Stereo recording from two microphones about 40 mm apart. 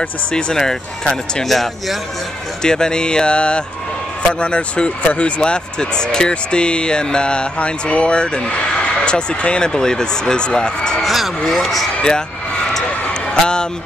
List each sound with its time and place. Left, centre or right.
0.3 s speech: left
0.6 s speech: centre
1.5 s speech: centre
2.6 s speech: centre
9.7 s speech: centre
11.0 s speech: centre
13.1 s a sound: left